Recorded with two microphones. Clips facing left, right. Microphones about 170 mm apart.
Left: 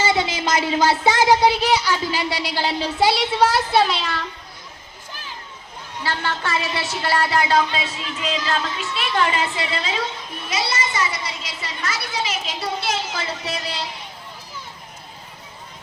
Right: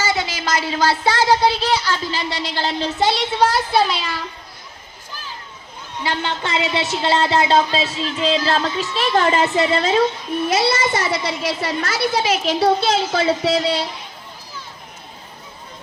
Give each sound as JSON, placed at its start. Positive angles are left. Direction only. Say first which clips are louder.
{"t": 0.0, "sound": "a child's voice", "louder": "left 2 dB", "side_deg": 25}
{"t": 6.0, "sound": "a woman's voice", "louder": "right 2 dB", "side_deg": -20}
{"t": 10.7, "sound": "a child's voice", "louder": "right 5 dB", "side_deg": -55}